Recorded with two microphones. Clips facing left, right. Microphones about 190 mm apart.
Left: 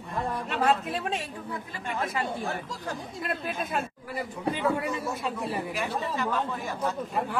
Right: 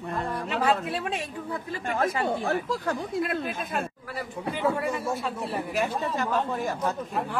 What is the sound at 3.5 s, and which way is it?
Speech, centre (ahead or behind).